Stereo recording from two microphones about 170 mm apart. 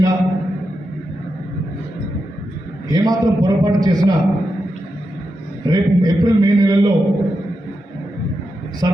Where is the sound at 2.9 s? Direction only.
20° right (ahead or behind).